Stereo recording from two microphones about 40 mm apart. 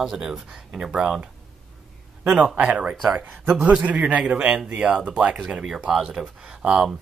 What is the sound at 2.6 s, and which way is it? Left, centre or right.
A man's voice, right.